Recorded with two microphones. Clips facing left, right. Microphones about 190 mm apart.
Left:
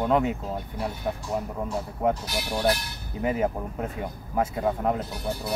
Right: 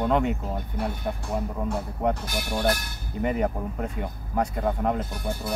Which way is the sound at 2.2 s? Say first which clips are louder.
Even; 50° right (ahead or behind).